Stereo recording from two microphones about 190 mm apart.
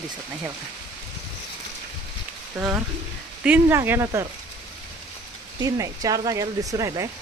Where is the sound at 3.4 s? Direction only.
10° right (ahead or behind).